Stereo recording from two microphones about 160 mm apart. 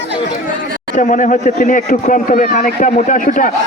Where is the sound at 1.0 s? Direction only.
50° left (ahead or behind).